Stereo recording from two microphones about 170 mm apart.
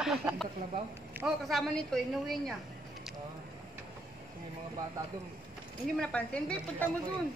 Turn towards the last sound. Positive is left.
turn(degrees=5)  # may be behind; listen again after turning